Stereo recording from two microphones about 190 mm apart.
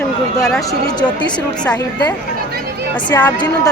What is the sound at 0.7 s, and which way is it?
Speech, 20° left (ahead or behind).